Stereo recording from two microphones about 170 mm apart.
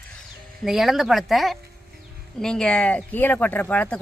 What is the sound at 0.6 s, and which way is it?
Speech, centre (ahead or behind).